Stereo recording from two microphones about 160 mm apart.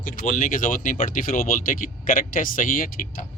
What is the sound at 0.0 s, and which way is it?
Speech, 55° left (ahead or behind).